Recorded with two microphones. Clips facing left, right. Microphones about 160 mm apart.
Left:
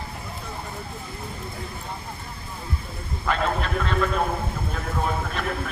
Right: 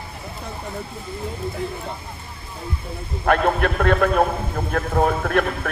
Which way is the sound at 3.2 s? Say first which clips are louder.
Right 7 dB; 60° right (ahead or behind).